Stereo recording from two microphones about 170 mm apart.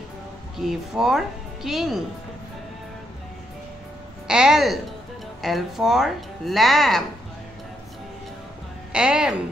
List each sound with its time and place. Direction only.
0.6 s speech: centre (ahead or behind)
4.3 s speech: 5° right (ahead or behind)
8.9 s speech: 5° right (ahead or behind)